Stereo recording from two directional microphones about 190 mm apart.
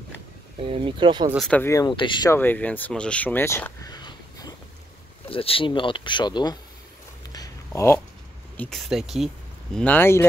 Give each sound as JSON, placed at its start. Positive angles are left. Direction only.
{"t": 0.6, "sound": "speech", "side_deg": -30}
{"t": 1.3, "sound": "speech", "side_deg": 5}
{"t": 2.3, "sound": "speech", "side_deg": 10}
{"t": 7.3, "sound": "a sound", "side_deg": 15}
{"t": 8.5, "sound": "speech", "side_deg": 0}
{"t": 9.8, "sound": "speech", "side_deg": 10}